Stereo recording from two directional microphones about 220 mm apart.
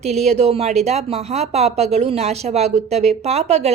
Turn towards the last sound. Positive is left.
turn(degrees=-30)  # may be behind; listen again after turning